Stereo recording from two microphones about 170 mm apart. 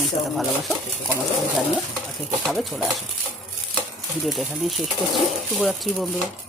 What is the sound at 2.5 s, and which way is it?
Speech, centre (ahead or behind).